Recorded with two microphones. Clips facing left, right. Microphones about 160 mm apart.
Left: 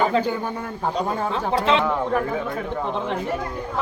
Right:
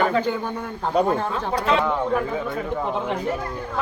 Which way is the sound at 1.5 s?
25° left (ahead or behind).